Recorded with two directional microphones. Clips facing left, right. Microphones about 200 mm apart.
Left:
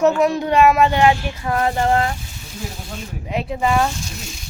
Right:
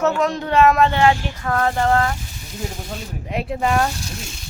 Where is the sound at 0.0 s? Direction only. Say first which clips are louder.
Left 4 dB; 10° left (ahead or behind).